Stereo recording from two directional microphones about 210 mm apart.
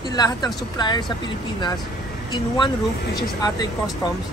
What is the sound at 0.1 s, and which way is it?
Speech, 20° left (ahead or behind).